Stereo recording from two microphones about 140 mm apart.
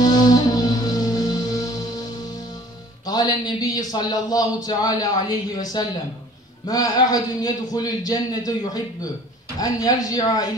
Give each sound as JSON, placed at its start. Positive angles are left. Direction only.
{"t": 0.0, "sound": "music", "side_deg": 30}
{"t": 3.1, "sound": "a sound", "side_deg": 30}
{"t": 4.6, "sound": "a man's voice", "side_deg": 25}